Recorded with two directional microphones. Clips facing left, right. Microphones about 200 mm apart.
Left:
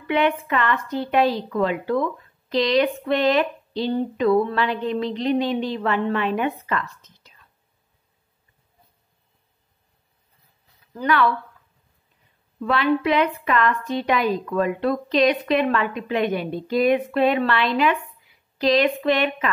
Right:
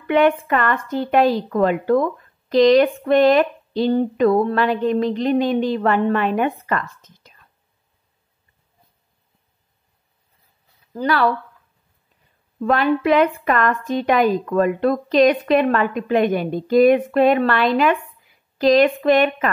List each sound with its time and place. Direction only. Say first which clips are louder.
0.0 s a woman's voice: right 5 dB; 45° right (ahead or behind)
10.9 s speech: right 2 dB; 35° right (ahead or behind)
12.5 s a woman's voice: right 3 dB; 45° right (ahead or behind)